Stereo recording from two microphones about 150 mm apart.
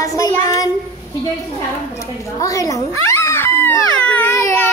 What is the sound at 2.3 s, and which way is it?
Baby cry, 25° left (ahead or behind).